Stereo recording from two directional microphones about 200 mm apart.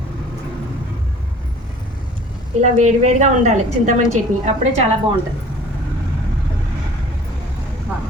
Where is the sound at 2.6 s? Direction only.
35° right (ahead or behind).